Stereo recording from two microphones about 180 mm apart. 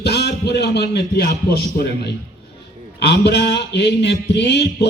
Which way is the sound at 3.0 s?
70° left (ahead or behind).